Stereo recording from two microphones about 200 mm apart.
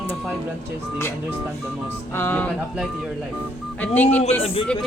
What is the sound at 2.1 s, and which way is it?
Speech, 10° left (ahead or behind).